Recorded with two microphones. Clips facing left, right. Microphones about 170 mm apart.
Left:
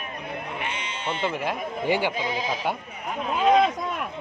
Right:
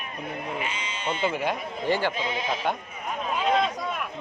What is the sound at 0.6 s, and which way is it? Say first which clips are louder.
Speech: even; 60° left (ahead or behind).